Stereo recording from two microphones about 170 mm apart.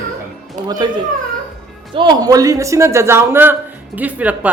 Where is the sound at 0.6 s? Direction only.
50° right (ahead or behind).